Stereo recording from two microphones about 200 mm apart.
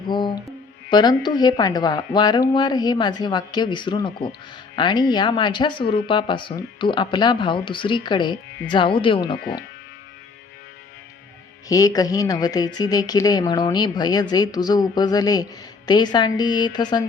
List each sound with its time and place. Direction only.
0.1 s mantra: 20° left (ahead or behind)
0.9 s speech: 20° left (ahead or behind)
11.7 s speech: 15° left (ahead or behind)